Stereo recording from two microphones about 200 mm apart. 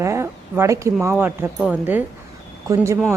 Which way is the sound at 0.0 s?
15° right (ahead or behind).